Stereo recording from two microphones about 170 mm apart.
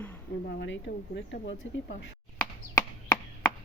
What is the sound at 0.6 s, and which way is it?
Speech, 90° left.